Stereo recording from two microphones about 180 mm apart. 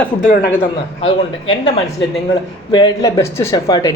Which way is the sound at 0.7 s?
30° left (ahead or behind).